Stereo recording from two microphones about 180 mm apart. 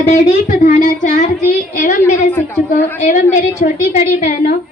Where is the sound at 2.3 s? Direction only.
15° left (ahead or behind).